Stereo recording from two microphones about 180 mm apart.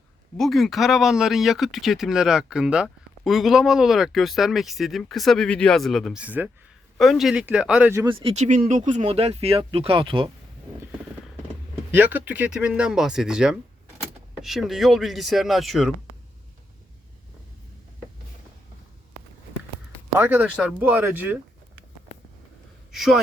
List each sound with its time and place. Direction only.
0.3 s speech: centre (ahead or behind)
8.0 s speech: 30° right (ahead or behind)
8.4 s speech: 45° right (ahead or behind)
11.9 s speech: 10° right (ahead or behind)
20.1 s speech: 10° right (ahead or behind)
22.9 s a man's voice: centre (ahead or behind)